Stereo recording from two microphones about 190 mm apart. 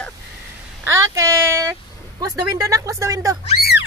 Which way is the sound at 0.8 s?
15° right (ahead or behind).